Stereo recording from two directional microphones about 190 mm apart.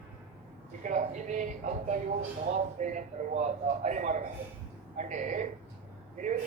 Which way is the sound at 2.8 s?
40° right (ahead or behind).